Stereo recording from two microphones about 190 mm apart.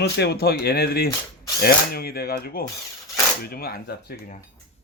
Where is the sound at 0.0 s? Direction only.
60° left (ahead or behind).